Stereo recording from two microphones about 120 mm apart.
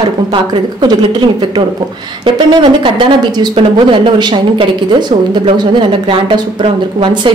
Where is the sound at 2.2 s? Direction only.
40° right (ahead or behind).